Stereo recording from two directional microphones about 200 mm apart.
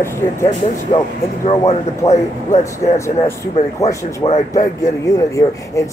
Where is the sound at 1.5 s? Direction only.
35° left (ahead or behind).